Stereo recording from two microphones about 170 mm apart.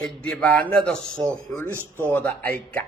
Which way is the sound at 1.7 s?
15° right (ahead or behind).